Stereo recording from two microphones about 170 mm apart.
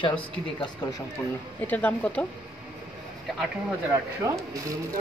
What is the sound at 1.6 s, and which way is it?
Speech, 10° left (ahead or behind).